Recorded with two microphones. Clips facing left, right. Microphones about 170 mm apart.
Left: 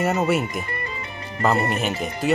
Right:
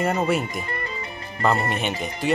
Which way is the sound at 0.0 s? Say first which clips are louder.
Left 1 dB; 5° left (ahead or behind).